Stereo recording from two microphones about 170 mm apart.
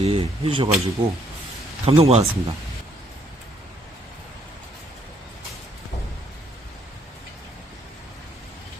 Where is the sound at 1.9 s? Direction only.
35° right (ahead or behind).